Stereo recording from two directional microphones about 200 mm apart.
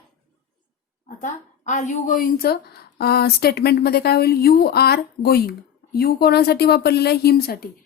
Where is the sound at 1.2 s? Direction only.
40° left (ahead or behind).